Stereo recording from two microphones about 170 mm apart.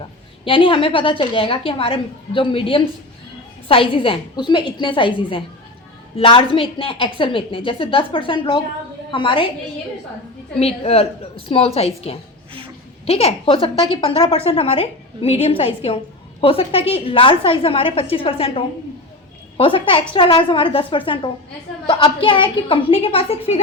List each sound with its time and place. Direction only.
0.4 s a woman's voice: 30° left (ahead or behind)
10.6 s a woman's voice: 35° left (ahead or behind)